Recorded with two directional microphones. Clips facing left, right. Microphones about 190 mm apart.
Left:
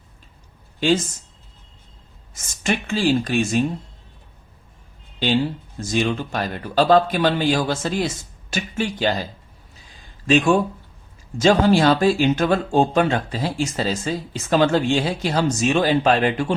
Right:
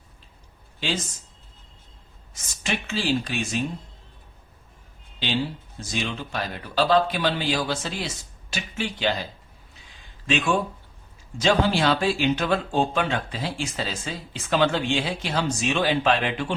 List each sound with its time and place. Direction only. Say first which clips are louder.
2.3 s speech: left 6 dB; 50° left (ahead or behind)
5.8 s speech: left 8 dB; 50° left (ahead or behind)
10.2 s speech: left 7 dB; 40° left (ahead or behind)